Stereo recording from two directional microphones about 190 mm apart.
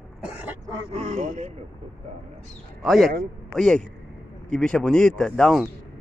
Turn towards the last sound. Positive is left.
turn(degrees=0)  # may be behind; listen again after turning